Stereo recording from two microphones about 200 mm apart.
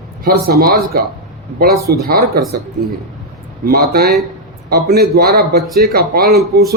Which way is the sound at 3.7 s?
50° right (ahead or behind).